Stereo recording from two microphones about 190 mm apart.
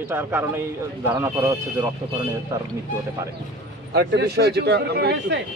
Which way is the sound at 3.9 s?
60° right (ahead or behind).